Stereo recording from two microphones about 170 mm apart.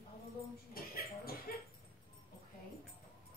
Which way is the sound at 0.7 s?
60° left (ahead or behind).